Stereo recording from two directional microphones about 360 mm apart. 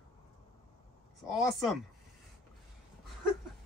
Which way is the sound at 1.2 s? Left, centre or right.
Centre.